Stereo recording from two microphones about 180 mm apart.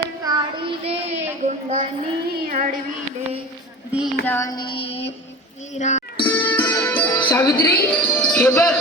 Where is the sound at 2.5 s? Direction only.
45° right (ahead or behind).